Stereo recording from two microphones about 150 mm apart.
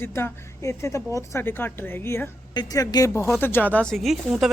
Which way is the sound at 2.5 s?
25° left (ahead or behind).